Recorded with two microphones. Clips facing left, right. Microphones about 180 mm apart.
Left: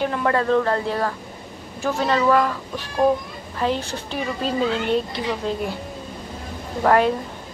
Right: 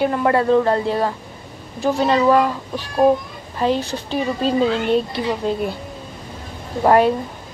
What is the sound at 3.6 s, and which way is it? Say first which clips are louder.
Speech: right 4 dB; 15° right (ahead or behind).